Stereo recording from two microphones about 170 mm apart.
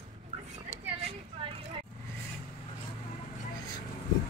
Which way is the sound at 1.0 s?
30° right (ahead or behind).